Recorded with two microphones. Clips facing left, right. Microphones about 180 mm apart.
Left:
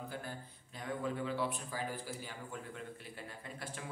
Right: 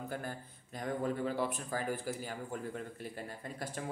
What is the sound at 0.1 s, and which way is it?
A man's voice, 50° right (ahead or behind).